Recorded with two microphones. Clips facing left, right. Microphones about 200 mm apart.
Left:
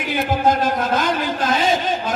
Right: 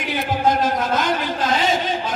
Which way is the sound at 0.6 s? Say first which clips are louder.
Left 1 dB; 55° left (ahead or behind).